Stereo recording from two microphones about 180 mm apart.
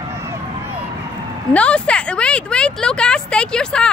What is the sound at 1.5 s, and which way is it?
Speech, 5° left (ahead or behind).